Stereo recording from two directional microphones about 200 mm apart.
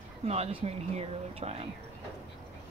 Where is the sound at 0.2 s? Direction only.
30° right (ahead or behind).